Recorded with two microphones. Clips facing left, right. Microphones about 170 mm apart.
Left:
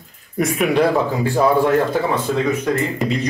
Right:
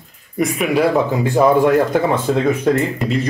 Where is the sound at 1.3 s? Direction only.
15° right (ahead or behind).